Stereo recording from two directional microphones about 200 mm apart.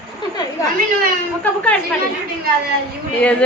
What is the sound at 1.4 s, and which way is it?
Speech, 5° left (ahead or behind).